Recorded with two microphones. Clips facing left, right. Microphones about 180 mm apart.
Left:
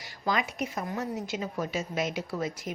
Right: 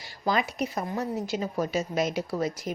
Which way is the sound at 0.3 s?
35° right (ahead or behind).